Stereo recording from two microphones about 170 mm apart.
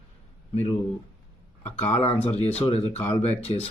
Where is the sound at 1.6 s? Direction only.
40° left (ahead or behind).